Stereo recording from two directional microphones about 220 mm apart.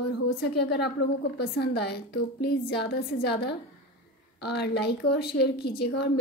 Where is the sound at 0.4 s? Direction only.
50° left (ahead or behind).